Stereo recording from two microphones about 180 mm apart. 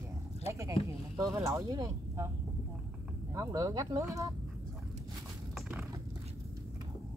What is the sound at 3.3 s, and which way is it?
Speech, 15° right (ahead or behind).